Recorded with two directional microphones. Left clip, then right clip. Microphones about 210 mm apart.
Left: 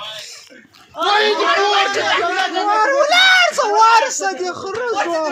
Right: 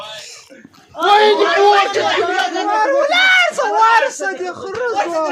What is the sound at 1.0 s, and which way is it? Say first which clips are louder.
Speech: right 4 dB; 35° right (ahead or behind).